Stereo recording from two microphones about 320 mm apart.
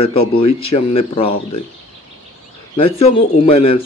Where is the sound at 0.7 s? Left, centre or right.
Centre.